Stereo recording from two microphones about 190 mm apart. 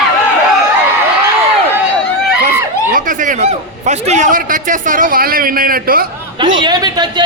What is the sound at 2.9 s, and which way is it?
A man's voice, 45° right (ahead or behind).